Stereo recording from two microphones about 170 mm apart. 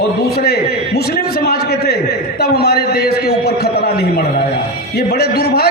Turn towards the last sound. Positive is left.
turn(degrees=70)  # may be behind; listen again after turning